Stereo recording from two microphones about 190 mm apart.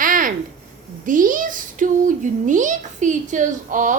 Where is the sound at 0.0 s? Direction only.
45° right (ahead or behind).